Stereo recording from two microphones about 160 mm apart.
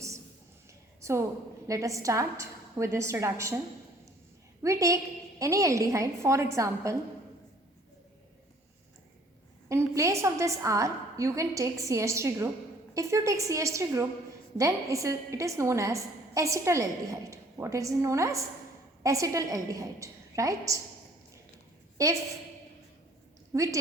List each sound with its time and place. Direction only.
1.6 s a woman's voice: 20° right (ahead or behind)
4.6 s a woman's voice: 20° right (ahead or behind)
9.6 s a woman's voice: 20° right (ahead or behind)
22.0 s a woman's voice: 20° right (ahead or behind)
23.5 s a woman's voice: 20° right (ahead or behind)